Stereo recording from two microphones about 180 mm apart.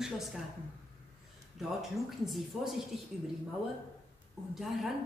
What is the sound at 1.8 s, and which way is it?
Speech, centre (ahead or behind).